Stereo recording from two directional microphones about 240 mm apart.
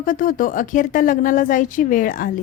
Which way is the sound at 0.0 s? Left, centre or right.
Left.